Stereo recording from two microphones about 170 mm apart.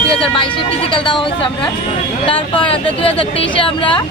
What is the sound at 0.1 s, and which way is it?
Speech, 30° left (ahead or behind).